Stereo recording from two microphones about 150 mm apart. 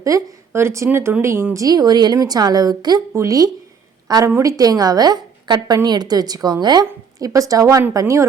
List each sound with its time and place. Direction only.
0.0 s a woman's voice: 20° right (ahead or behind)